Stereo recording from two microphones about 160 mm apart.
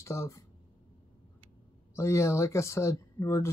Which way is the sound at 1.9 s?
15° left (ahead or behind).